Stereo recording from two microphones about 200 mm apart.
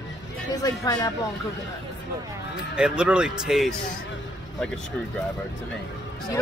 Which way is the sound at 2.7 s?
5° right (ahead or behind).